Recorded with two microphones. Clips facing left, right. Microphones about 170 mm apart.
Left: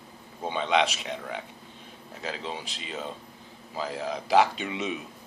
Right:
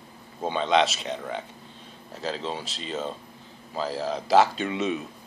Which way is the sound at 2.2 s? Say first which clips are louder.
Right 4 dB; 35° right (ahead or behind).